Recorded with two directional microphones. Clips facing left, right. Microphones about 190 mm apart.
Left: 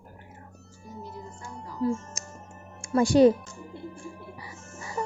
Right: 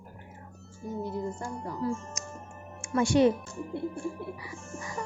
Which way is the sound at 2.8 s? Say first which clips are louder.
Left 4 dB; 35° left (ahead or behind).